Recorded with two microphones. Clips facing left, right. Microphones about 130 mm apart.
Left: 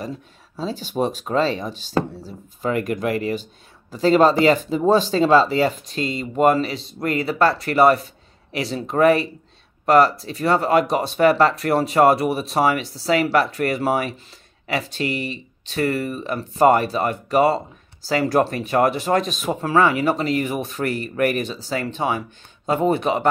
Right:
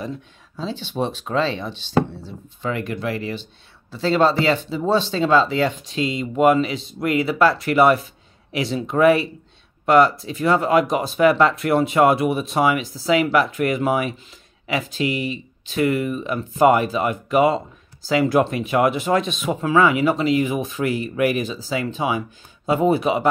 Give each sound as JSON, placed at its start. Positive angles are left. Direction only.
{"t": 0.6, "sound": "speech", "side_deg": 40}
{"t": 5.8, "sound": "speech", "side_deg": 0}